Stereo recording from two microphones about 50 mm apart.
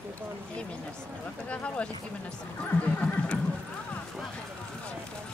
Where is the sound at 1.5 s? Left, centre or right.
Left.